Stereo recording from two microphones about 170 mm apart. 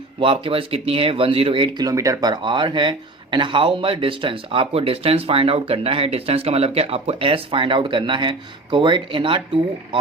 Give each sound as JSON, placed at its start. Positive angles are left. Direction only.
{"t": 0.2, "sound": "speech", "side_deg": -30}
{"t": 1.9, "sound": "speech", "side_deg": -20}